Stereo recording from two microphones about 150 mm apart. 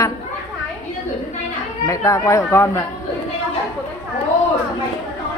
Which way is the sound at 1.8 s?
20° left (ahead or behind).